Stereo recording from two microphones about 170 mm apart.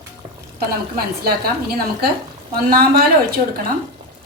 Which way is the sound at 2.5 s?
65° right (ahead or behind).